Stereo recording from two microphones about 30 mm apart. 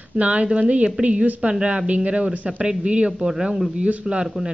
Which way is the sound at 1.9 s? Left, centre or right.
Right.